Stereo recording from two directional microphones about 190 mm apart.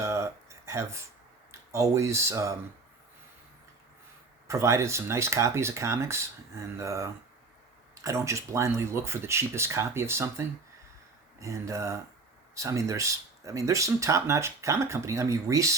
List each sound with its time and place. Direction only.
0.0 s a sound: 15° right (ahead or behind)
1.7 s speech: 15° right (ahead or behind)
4.4 s speech: 15° right (ahead or behind)